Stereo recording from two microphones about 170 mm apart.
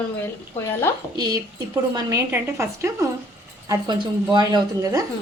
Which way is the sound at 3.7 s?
25° right (ahead or behind).